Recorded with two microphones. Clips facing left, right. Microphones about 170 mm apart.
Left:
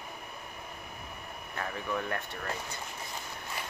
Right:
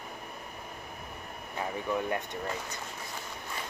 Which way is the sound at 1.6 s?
15° right (ahead or behind).